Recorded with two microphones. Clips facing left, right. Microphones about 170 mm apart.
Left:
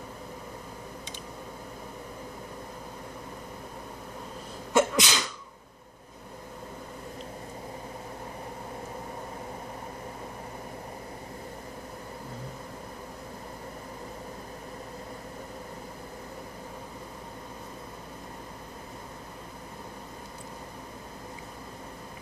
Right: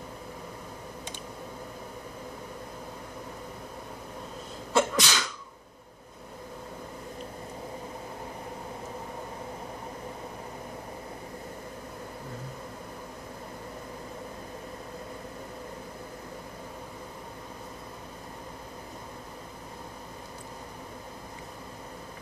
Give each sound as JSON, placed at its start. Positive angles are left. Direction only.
{"t": 4.7, "sound": "sneeze", "side_deg": 20}